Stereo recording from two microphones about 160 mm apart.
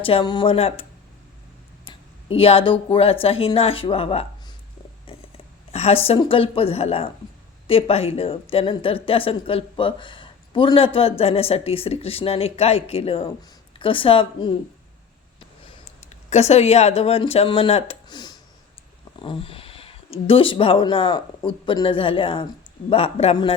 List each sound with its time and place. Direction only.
0.0 s a woman's voice: 35° left (ahead or behind)
1.9 s speech: 35° left (ahead or behind)
5.7 s a sound: 40° left (ahead or behind)
6.1 s a woman's voice: 35° left (ahead or behind)
16.0 s a woman's voice: 45° left (ahead or behind)